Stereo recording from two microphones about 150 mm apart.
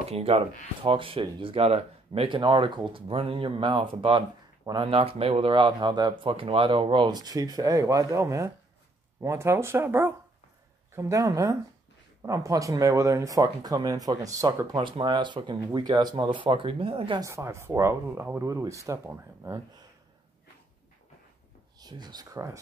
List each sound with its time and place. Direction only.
0.1 s speech: 40° right (ahead or behind)
17.2 s speech: 20° right (ahead or behind)
21.7 s speech: 30° right (ahead or behind)